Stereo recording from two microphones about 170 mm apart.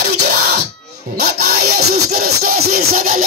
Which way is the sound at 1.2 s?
70° right (ahead or behind).